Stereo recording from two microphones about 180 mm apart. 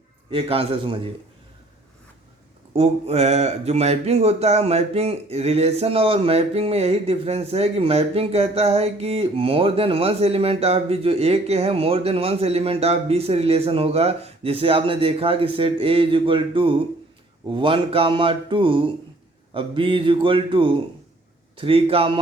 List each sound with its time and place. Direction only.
0.3 s speech: 30° right (ahead or behind)
2.7 s speech: 35° right (ahead or behind)